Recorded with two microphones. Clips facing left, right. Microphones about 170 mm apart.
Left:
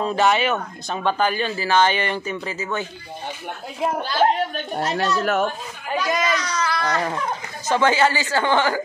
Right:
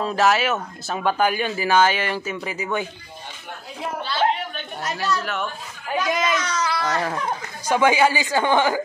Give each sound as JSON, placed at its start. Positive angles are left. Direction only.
{"t": 0.0, "sound": "speech", "side_deg": 0}
{"t": 4.1, "sound": "a sound", "side_deg": 45}
{"t": 5.2, "sound": "speech", "side_deg": 45}
{"t": 5.9, "sound": "speech", "side_deg": 0}
{"t": 7.6, "sound": "speech", "side_deg": -10}